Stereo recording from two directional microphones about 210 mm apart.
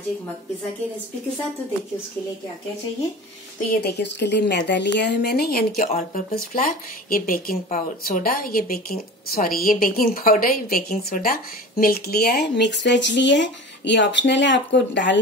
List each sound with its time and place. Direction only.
3.8 s speech: 55° left (ahead or behind)